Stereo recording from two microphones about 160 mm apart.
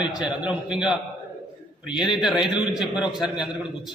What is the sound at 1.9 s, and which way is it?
A man's voice, 5° right (ahead or behind).